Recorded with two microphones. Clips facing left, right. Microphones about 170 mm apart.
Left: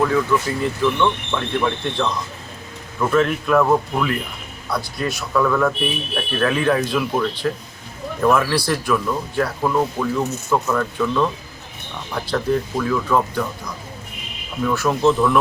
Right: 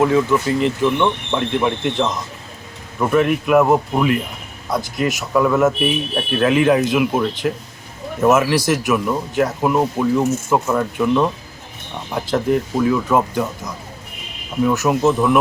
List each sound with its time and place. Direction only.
0.0 s speech: 20° right (ahead or behind)
14.6 s speech: 20° right (ahead or behind)